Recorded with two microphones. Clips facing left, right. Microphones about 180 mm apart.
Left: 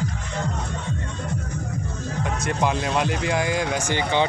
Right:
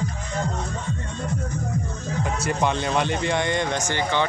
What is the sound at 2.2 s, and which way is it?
Speech, centre (ahead or behind).